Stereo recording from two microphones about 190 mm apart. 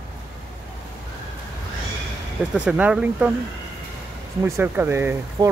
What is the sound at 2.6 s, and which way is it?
Speech, 5° right (ahead or behind).